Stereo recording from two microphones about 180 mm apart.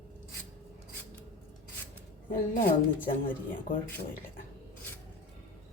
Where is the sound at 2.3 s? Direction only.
50° left (ahead or behind).